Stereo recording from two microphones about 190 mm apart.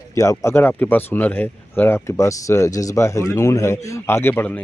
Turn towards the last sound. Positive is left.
turn(degrees=10)  # may be behind; listen again after turning